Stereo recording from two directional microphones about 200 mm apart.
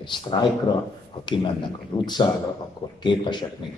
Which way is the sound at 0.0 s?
25° left (ahead or behind).